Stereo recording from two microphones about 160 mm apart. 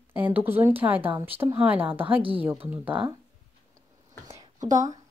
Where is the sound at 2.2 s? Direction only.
35° right (ahead or behind).